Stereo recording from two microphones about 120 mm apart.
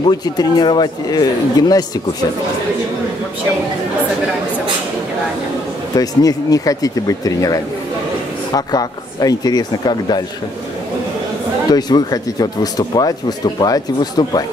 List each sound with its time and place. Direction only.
0.0 s speech: 35° left (ahead or behind)
5.9 s speech: 30° left (ahead or behind)
11.7 s speech: 35° left (ahead or behind)